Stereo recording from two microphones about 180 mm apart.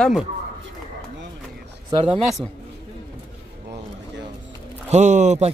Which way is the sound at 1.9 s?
30° right (ahead or behind).